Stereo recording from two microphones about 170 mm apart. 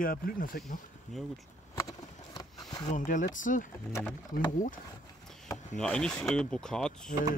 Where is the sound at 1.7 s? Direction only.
20° left (ahead or behind).